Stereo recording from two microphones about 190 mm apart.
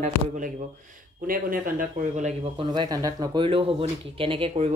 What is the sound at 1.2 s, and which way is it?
Speech, 50° right (ahead or behind).